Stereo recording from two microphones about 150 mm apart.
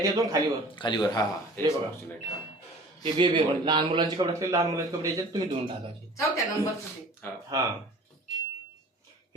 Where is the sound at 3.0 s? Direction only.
35° right (ahead or behind).